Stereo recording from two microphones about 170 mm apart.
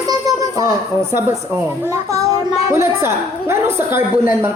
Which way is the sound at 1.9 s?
20° right (ahead or behind).